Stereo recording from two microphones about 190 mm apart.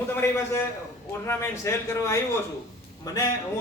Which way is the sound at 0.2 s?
15° left (ahead or behind).